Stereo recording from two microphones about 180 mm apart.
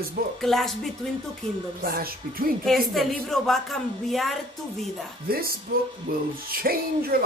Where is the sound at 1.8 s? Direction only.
55° right (ahead or behind).